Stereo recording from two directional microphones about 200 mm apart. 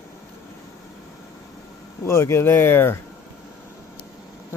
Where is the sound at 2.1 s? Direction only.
15° left (ahead or behind).